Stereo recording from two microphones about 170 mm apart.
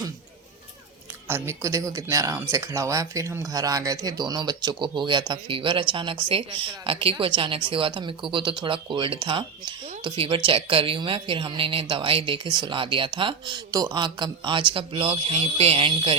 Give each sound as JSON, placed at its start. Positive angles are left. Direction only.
{"t": 1.3, "sound": "speech", "side_deg": -15}